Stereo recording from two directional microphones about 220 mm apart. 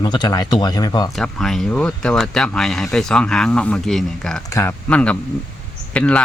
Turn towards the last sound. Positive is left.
turn(degrees=5)  # may be behind; listen again after turning